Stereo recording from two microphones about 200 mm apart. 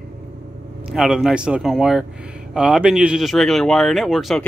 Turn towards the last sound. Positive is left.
turn(degrees=0)  # may be behind; listen again after turning